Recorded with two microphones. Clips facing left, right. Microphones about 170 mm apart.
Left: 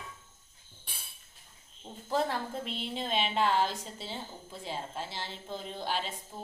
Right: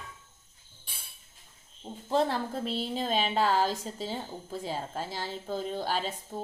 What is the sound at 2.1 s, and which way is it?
A woman's voice, 30° right (ahead or behind).